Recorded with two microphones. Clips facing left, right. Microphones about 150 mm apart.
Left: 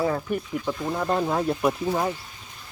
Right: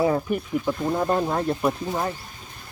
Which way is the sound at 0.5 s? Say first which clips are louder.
Right 3 dB; 10° right (ahead or behind).